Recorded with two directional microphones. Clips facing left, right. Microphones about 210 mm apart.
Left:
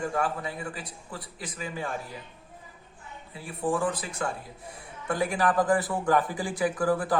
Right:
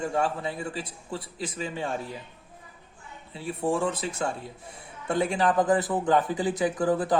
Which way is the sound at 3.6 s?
25° right (ahead or behind).